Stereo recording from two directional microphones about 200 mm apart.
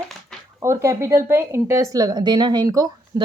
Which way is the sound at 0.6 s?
15° right (ahead or behind).